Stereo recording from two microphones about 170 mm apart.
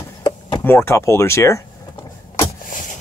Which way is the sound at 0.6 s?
15° left (ahead or behind).